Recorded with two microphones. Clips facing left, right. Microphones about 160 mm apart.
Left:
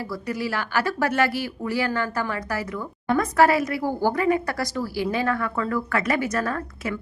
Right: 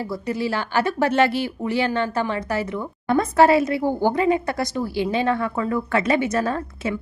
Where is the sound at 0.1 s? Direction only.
25° right (ahead or behind).